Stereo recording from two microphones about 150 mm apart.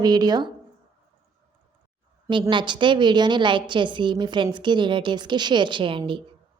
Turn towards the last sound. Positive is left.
turn(degrees=-35)  # may be behind; listen again after turning